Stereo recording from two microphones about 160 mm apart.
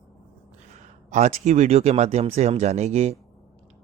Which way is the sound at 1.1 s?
45° right (ahead or behind).